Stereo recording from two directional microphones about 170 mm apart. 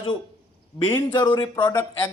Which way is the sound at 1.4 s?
30° left (ahead or behind).